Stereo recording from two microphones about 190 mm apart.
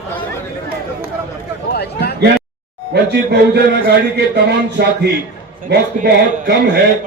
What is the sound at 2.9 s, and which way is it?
Speech, 60° right (ahead or behind).